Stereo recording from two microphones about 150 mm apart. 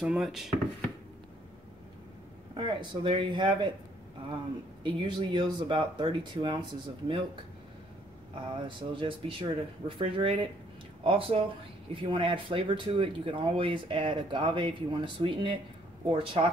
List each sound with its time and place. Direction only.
0.0 s speech: 5° right (ahead or behind)
2.5 s speech: 35° right (ahead or behind)
4.8 s speech: 30° right (ahead or behind)
8.6 s speech: 35° right (ahead or behind)